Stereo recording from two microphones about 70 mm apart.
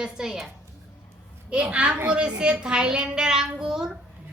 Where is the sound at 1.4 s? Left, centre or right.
Centre.